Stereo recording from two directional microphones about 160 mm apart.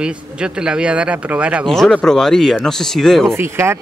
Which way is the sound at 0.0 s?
5° right (ahead or behind).